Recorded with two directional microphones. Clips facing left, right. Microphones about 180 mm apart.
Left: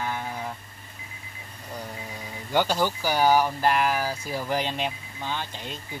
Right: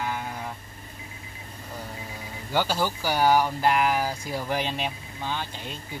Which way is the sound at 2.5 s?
15° left (ahead or behind).